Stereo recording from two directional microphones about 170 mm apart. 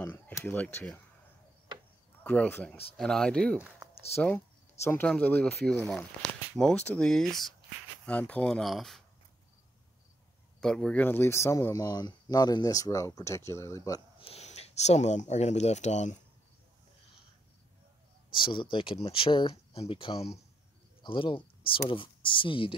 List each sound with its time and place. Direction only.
0.0 s speech: 10° left (ahead or behind)
2.2 s speech: 5° left (ahead or behind)
3.5 s speech: 5° right (ahead or behind)
4.8 s speech: 10° left (ahead or behind)
10.6 s speech: 5° left (ahead or behind); by 14.0 s 20° left (ahead or behind)
14.2 s speech: 40° left (ahead or behind)
18.3 s speech: 30° left (ahead or behind)